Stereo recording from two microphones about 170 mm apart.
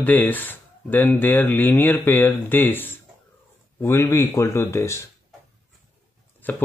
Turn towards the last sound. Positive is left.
turn(degrees=10)  # may be behind; listen again after turning